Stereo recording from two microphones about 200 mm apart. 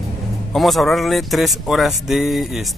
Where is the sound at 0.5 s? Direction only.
Centre (ahead or behind).